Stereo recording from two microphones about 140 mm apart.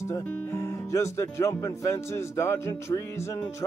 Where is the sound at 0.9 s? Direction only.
20° left (ahead or behind).